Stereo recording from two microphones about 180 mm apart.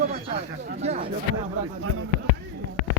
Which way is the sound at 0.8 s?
35° right (ahead or behind).